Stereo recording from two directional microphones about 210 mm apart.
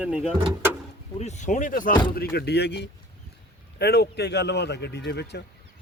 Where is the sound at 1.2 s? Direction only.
35° left (ahead or behind).